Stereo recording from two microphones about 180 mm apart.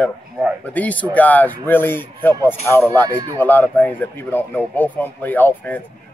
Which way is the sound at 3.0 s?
25° right (ahead or behind).